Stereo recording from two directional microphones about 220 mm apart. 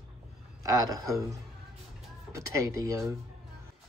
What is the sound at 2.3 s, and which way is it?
Speech, 15° right (ahead or behind).